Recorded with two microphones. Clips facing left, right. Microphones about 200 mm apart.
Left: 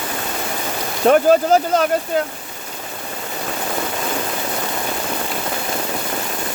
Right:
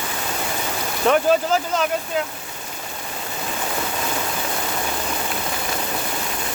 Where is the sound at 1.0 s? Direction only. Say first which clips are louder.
Left 5 dB; 40° left (ahead or behind).